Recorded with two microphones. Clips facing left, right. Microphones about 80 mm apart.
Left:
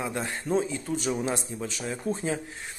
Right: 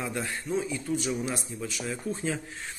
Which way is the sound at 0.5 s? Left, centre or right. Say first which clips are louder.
Left 4 dB; left.